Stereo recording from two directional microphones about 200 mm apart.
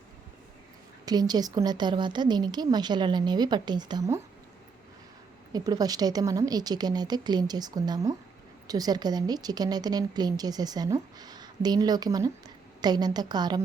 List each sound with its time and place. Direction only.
1.0 s a woman's voice: 20° right (ahead or behind)
5.5 s a woman's voice: 20° right (ahead or behind)